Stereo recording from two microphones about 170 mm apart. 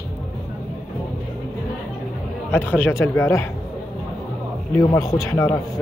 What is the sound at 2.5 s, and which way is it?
Speech, 15° left (ahead or behind).